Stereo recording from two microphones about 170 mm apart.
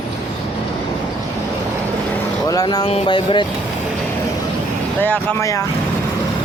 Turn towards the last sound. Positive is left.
turn(degrees=15)  # may be behind; listen again after turning